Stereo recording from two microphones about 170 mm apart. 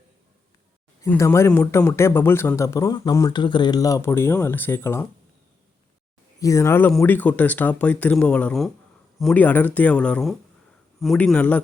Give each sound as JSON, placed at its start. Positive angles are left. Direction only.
{"t": 1.0, "sound": "a man's voice", "side_deg": 15}
{"t": 6.4, "sound": "a man's voice", "side_deg": 20}